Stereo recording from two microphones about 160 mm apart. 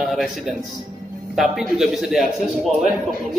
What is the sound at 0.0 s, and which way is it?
A man's voice, centre (ahead or behind).